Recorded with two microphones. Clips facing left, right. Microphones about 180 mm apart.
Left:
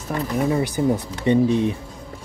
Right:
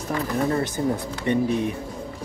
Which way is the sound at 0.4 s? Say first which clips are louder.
Left 4 dB; 10° left (ahead or behind).